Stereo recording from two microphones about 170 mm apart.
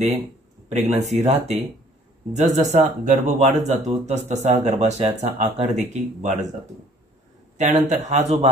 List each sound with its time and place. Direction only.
0.7 s speech: 40° right (ahead or behind)
7.5 s speech: 45° right (ahead or behind)